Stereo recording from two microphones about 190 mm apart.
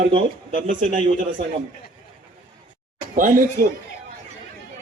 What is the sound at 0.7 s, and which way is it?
Speech, 40° right (ahead or behind).